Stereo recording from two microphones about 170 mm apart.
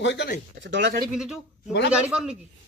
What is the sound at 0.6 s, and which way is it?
Speech, 90° right.